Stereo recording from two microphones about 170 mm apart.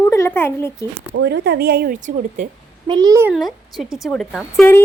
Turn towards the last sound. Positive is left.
turn(degrees=0)  # may be behind; listen again after turning